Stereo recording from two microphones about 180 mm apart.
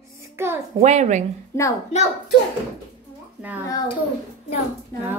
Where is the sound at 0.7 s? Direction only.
40° right (ahead or behind).